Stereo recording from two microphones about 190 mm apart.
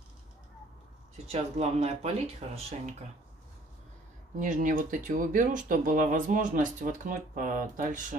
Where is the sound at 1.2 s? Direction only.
35° right (ahead or behind).